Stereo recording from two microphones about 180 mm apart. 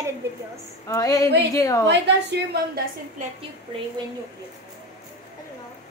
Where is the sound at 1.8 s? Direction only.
70° right (ahead or behind).